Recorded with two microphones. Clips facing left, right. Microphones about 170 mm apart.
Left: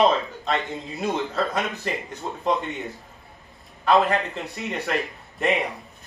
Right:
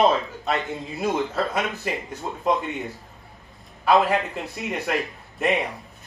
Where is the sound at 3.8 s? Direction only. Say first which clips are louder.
Even; 10° right (ahead or behind).